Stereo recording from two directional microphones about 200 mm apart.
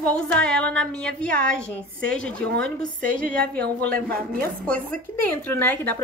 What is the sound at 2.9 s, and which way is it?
Speech, 40° right (ahead or behind).